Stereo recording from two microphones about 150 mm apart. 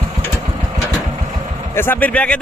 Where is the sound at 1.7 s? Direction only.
15° left (ahead or behind).